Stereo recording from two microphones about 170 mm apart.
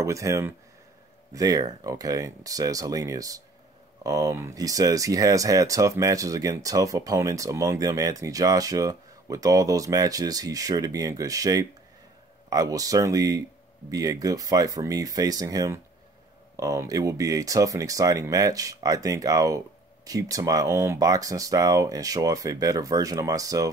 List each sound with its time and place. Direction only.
0.0 s speech: 20° right (ahead or behind)